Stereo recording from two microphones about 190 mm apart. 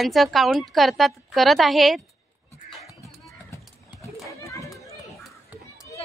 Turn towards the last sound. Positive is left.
turn(degrees=15)  # may be behind; listen again after turning